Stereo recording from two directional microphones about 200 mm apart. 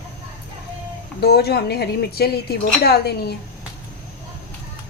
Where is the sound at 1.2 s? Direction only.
50° left (ahead or behind).